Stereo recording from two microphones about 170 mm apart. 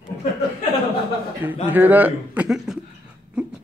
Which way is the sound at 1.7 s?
10° right (ahead or behind).